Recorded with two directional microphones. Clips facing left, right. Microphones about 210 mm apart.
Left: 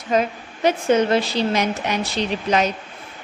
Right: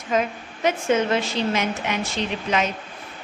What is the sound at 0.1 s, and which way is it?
A woman's voice, 35° left (ahead or behind).